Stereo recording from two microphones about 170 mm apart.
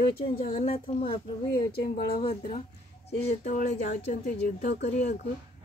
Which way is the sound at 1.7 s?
65° left (ahead or behind).